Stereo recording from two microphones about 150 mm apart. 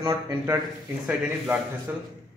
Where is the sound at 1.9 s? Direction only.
15° right (ahead or behind).